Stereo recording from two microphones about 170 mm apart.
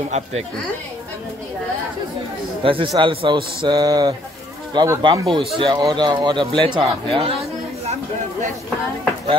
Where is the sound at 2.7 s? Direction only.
30° right (ahead or behind).